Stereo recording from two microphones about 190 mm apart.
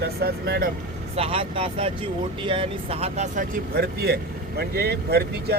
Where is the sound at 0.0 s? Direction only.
55° right (ahead or behind).